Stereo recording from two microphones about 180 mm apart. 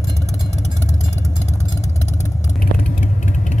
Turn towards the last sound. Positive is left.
turn(degrees=40)  # may be behind; listen again after turning